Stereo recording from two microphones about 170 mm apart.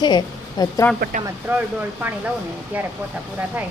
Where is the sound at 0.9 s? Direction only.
60° right (ahead or behind).